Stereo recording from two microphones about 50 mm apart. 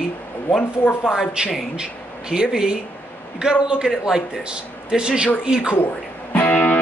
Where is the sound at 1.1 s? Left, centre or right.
Centre.